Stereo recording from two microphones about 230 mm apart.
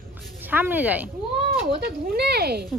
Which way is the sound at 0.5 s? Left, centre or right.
Centre.